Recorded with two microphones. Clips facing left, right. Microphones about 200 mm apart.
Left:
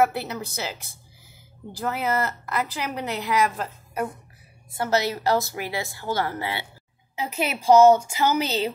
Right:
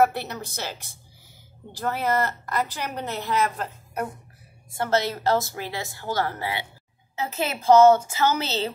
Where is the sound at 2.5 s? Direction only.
10° left (ahead or behind).